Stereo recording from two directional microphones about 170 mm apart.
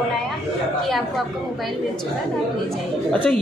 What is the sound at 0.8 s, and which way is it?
Speech, centre (ahead or behind).